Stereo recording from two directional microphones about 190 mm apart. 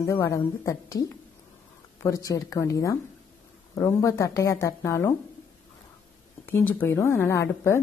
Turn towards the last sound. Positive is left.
turn(degrees=15)  # may be behind; listen again after turning